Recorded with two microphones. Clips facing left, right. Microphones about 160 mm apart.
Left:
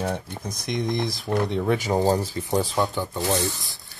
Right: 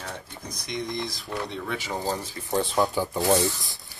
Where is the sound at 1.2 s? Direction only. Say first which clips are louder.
Left 12 dB; 45° left (ahead or behind).